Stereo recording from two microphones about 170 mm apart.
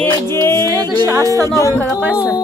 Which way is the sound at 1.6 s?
20° left (ahead or behind).